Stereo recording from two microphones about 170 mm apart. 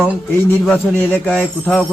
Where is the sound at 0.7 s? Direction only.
10° left (ahead or behind).